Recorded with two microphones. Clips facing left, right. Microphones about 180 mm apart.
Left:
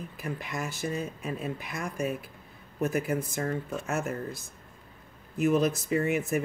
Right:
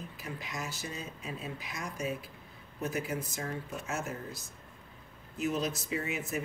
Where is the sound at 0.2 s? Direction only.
55° left (ahead or behind).